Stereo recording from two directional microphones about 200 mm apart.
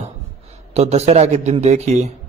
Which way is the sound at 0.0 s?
30° right (ahead or behind).